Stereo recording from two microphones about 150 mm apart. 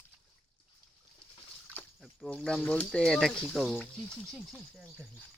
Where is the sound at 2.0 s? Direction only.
5° left (ahead or behind).